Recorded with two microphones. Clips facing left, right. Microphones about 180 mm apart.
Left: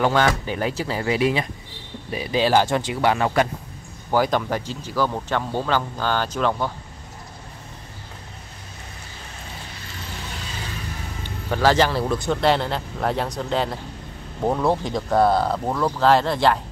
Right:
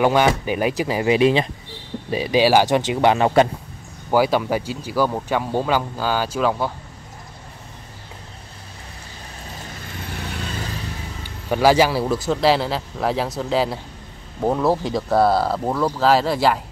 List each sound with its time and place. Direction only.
0.0 s speech: 15° right (ahead or behind)
4.1 s speech: 10° right (ahead or behind)
11.2 s speech: 10° right (ahead or behind)